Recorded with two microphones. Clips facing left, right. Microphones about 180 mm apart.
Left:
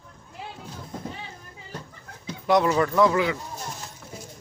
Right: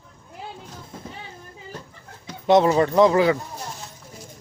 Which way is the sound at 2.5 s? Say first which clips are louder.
Right 4 dB; 25° right (ahead or behind).